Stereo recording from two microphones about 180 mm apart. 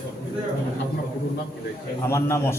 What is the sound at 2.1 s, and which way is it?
Speech, 15° left (ahead or behind).